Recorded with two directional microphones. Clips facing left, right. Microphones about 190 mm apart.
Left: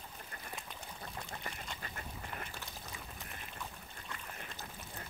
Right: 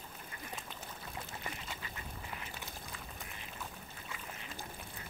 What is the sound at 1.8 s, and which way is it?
Duck, 50° left (ahead or behind).